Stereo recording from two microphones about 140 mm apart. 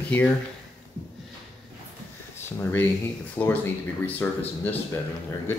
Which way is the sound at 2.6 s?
15° left (ahead or behind).